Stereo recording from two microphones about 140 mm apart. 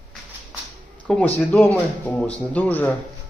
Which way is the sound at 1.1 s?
10° left (ahead or behind).